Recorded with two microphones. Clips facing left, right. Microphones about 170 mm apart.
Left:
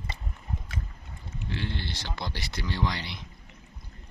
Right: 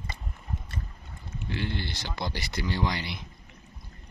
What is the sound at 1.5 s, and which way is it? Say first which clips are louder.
Mantra: right 2 dB; 5° right (ahead or behind).